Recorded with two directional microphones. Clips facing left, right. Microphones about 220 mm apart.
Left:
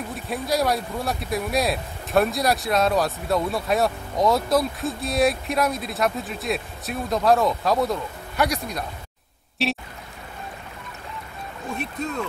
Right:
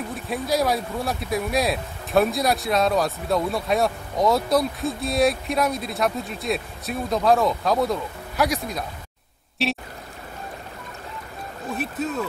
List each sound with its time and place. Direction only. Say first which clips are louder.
0.1 s speech: even; centre (ahead or behind)
9.6 s pour: even; centre (ahead or behind)
11.8 s speech: right 2 dB; 5° right (ahead or behind)